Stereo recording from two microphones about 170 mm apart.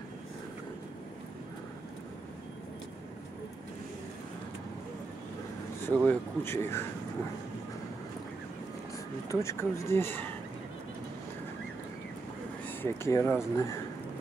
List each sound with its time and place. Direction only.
5.8 s speech: 10° left (ahead or behind)
9.3 s speech: 15° left (ahead or behind)
12.6 s a sound: 15° left (ahead or behind)
13.4 s speech: 15° left (ahead or behind)